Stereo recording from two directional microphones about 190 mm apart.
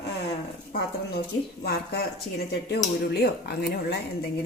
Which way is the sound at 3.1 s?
55° left (ahead or behind).